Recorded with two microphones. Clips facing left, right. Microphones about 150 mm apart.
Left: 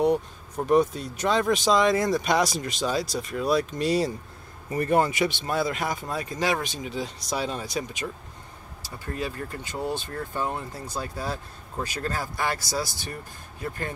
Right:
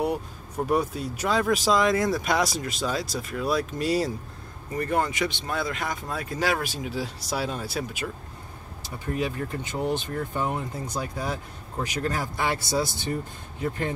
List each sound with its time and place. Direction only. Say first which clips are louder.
0.0 s speech: left 4 dB; 5° right (ahead or behind)
4.7 s speech: left 3 dB; 10° left (ahead or behind); by 8.0 s 5° right (ahead or behind)
8.8 s speech: right 3 dB; 20° right (ahead or behind)